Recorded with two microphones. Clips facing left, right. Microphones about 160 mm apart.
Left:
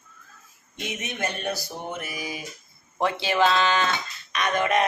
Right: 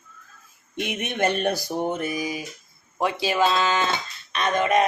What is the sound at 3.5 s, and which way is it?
Music, 20° right (ahead or behind).